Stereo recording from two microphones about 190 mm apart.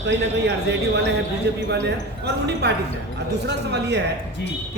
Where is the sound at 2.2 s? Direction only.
60° right (ahead or behind).